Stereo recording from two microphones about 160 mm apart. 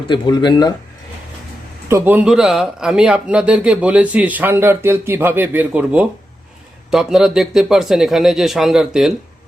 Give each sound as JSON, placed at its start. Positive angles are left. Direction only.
{"t": 0.1, "sound": "speech", "side_deg": 30}
{"t": 1.9, "sound": "a man's voice", "side_deg": -15}